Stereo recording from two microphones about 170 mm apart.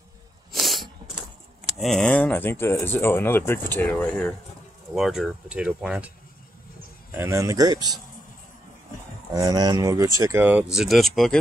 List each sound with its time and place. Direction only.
0.5 s sneeze: centre (ahead or behind)
1.8 s speech: 5° left (ahead or behind)
4.9 s speech: centre (ahead or behind)
7.2 s speech: 15° right (ahead or behind)
9.3 s speech: 20° right (ahead or behind); by 11.3 s centre (ahead or behind)